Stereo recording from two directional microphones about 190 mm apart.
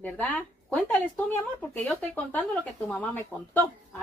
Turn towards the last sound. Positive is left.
turn(degrees=10)  # may be behind; listen again after turning